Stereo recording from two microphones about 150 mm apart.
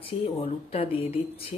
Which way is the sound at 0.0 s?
40° left (ahead or behind).